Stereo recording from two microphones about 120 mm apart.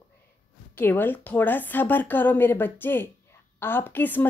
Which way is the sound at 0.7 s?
15° left (ahead or behind).